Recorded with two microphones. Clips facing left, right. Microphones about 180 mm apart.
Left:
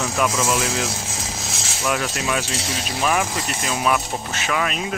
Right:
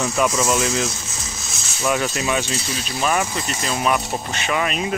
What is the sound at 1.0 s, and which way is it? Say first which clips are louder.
Music: left 4 dB; 90° left.